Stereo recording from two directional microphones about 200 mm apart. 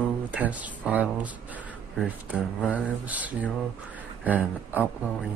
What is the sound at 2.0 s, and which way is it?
Mantra, 5° right (ahead or behind).